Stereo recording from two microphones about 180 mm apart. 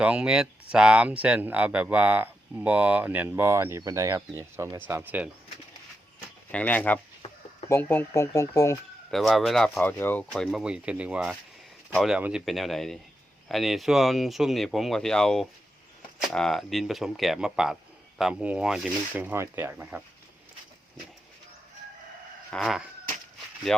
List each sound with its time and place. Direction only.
0.0 s speech: 5° right (ahead or behind)
6.5 s speech: 10° left (ahead or behind)
9.0 s speech: centre (ahead or behind)
10.3 s speech: centre (ahead or behind)
22.4 s dog: centre (ahead or behind)
23.7 s speech: centre (ahead or behind)